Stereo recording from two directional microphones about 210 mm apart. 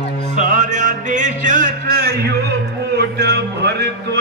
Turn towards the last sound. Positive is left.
turn(degrees=-55)  # may be behind; listen again after turning